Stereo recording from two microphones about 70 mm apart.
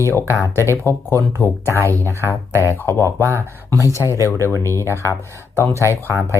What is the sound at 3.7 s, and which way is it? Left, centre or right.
Speech, left.